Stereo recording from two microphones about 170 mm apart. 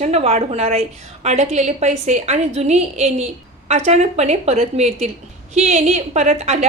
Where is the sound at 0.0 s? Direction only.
40° right (ahead or behind).